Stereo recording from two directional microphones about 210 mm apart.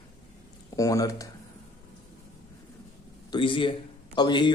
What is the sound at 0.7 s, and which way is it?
Speech, 15° left (ahead or behind).